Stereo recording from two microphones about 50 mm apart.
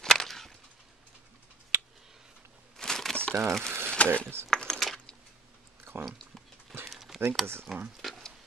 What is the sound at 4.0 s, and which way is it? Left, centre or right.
Speech, left.